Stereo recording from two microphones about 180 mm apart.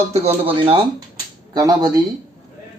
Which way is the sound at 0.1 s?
30° right (ahead or behind).